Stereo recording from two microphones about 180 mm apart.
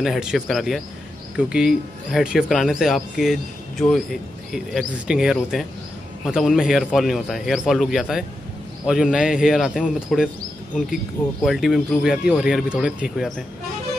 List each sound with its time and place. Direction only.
0.0 s speech: 5° right (ahead or behind)
11.4 s speech: centre (ahead or behind)